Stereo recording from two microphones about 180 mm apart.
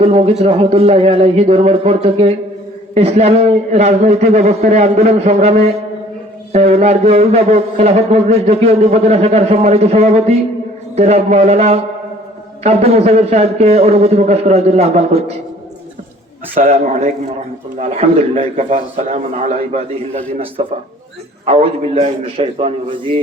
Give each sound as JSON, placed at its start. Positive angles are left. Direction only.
{"t": 0.0, "sound": "a man's voice", "side_deg": -30}
{"t": 16.6, "sound": "a man's voice", "side_deg": -35}